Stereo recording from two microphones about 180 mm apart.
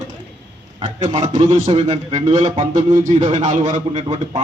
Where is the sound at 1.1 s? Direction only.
45° right (ahead or behind).